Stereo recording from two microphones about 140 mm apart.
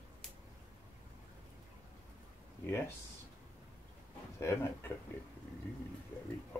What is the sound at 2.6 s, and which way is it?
Speech, 20° left (ahead or behind).